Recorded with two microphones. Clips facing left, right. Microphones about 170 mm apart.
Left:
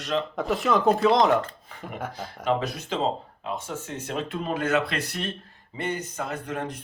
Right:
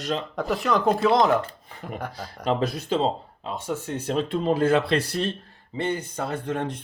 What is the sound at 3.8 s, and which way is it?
Speech, 35° right (ahead or behind).